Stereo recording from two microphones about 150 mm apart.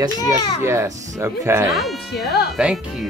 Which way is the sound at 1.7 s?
Centre (ahead or behind).